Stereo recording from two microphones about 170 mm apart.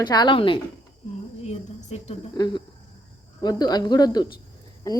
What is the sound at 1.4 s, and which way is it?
Speech, 40° left (ahead or behind).